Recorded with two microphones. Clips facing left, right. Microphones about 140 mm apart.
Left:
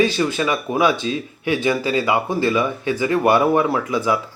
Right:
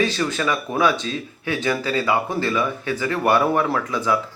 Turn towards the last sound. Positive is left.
turn(degrees=15)  # may be behind; listen again after turning